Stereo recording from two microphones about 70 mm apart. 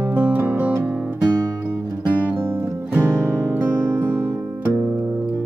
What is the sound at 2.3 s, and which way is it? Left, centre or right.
Music, right.